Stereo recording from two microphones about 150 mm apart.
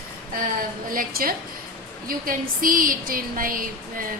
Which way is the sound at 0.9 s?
70° right (ahead or behind).